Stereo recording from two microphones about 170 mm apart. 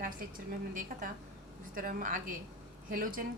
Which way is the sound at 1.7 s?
55° right (ahead or behind).